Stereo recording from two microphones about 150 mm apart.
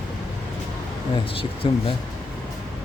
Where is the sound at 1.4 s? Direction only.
35° left (ahead or behind).